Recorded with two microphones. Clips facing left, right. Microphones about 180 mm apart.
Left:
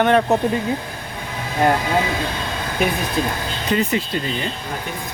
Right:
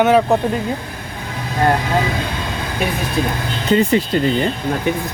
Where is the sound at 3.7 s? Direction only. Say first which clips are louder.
Right 6 dB; 30° right (ahead or behind).